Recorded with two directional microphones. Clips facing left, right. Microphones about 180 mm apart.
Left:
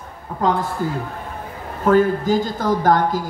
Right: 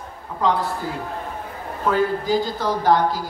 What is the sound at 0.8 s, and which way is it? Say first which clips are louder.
Speech: left 3 dB; 50° left (ahead or behind).